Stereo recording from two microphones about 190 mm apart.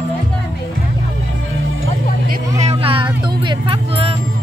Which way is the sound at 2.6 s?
30° right (ahead or behind).